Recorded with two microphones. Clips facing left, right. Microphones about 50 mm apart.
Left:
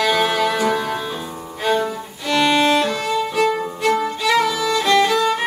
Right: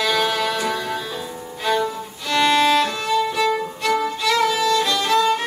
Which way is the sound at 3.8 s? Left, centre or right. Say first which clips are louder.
Left 2 dB; centre.